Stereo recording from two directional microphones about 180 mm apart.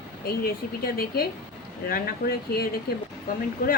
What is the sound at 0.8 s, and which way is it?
A woman's voice, 55° left (ahead or behind).